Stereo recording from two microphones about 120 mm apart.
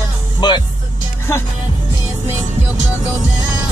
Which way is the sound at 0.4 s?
40° left (ahead or behind).